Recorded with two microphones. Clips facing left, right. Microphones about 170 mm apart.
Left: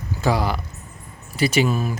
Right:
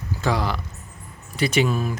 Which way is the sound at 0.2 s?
10° left (ahead or behind).